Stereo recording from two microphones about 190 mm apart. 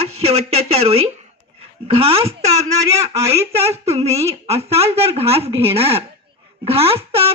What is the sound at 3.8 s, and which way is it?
Speech, 35° right (ahead or behind).